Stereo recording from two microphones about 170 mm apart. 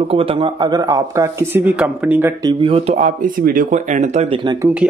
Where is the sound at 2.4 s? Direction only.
30° right (ahead or behind).